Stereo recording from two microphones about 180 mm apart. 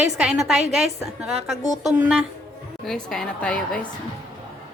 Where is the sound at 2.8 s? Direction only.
Centre (ahead or behind).